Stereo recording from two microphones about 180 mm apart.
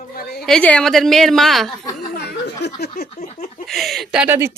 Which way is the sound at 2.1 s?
65° left (ahead or behind).